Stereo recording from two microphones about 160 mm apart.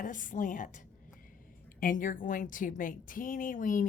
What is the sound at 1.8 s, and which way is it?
A woman's voice, 55° left (ahead or behind).